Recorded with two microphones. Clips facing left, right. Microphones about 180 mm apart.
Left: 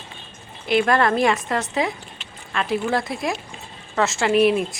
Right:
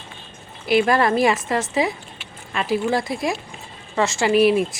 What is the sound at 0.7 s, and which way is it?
A woman's voice, 5° right (ahead or behind).